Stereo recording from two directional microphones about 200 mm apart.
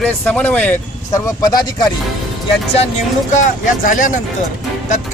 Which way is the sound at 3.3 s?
40° left (ahead or behind).